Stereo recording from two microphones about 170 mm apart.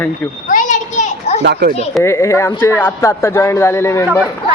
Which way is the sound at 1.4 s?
85° right.